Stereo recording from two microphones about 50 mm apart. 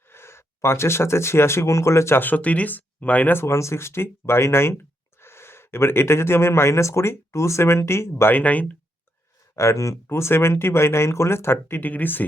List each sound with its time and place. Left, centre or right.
0.1 s speech: left
2.1 s speech: left
3.4 s speech: left
8.2 s speech: left
9.6 s speech: left
11.8 s speech: left